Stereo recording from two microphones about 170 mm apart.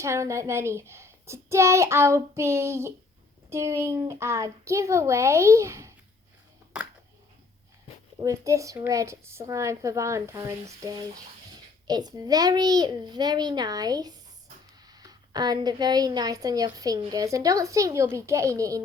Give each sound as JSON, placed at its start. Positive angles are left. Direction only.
{"t": 0.0, "sound": "a woman's voice", "side_deg": -15}
{"t": 8.2, "sound": "a woman's voice", "side_deg": -20}